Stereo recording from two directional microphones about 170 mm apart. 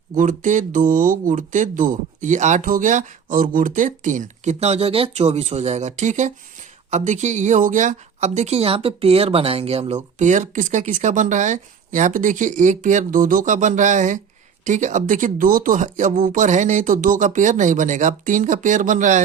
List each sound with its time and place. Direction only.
0.2 s a woman's voice: 50° right (ahead or behind)